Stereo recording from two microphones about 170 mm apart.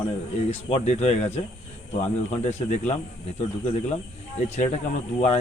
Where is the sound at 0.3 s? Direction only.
40° left (ahead or behind).